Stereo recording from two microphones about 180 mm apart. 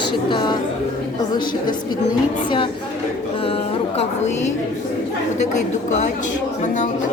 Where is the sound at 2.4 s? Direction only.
30° left (ahead or behind).